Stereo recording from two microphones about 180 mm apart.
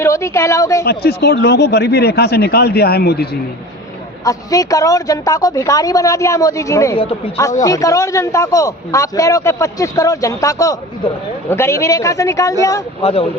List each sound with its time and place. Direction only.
0.0 s a man's voice: 15° left (ahead or behind)
0.9 s speech: 60° left (ahead or behind)
4.2 s a man's voice: 20° left (ahead or behind)
13.0 s speech: 35° left (ahead or behind)